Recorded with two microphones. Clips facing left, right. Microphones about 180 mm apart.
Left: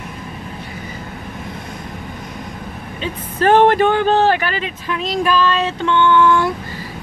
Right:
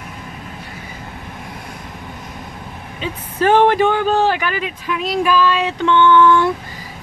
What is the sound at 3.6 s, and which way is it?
Speech, 10° right (ahead or behind).